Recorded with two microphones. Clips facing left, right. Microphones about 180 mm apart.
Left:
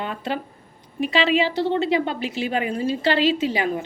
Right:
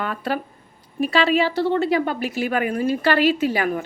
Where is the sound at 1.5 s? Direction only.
20° left (ahead or behind).